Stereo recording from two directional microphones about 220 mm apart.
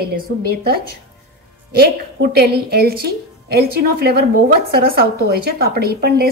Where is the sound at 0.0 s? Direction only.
45° right (ahead or behind).